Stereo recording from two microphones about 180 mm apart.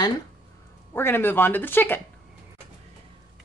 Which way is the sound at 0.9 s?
10° left (ahead or behind).